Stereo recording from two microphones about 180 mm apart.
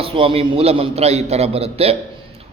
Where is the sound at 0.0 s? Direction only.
30° right (ahead or behind).